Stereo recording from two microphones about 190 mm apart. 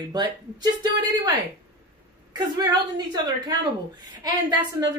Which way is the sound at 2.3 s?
20° right (ahead or behind).